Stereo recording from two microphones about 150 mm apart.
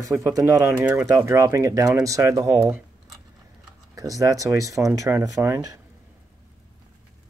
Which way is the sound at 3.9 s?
20° right (ahead or behind).